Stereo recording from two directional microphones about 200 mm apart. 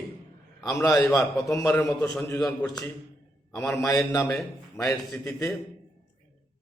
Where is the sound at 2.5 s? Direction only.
15° left (ahead or behind).